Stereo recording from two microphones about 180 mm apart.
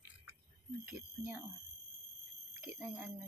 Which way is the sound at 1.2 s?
10° right (ahead or behind).